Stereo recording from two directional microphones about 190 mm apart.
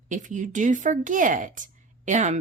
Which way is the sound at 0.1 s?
40° right (ahead or behind).